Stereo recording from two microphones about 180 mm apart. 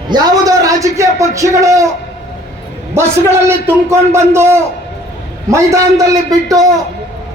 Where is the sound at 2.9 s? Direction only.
15° right (ahead or behind).